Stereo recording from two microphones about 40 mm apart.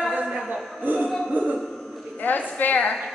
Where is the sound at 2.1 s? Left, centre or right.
Left.